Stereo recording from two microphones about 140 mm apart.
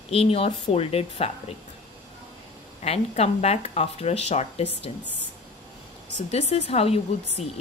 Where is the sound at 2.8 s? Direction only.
50° left (ahead or behind).